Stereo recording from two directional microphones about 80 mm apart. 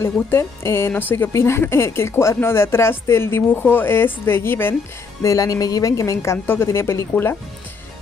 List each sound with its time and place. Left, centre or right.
0.0 s speech: left
5.2 s speech: left